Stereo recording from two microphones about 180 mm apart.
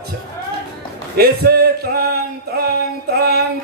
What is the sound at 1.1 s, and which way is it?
Male singing, 60° right (ahead or behind).